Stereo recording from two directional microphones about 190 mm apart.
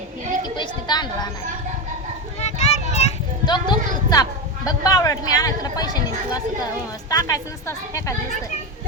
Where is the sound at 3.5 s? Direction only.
20° left (ahead or behind).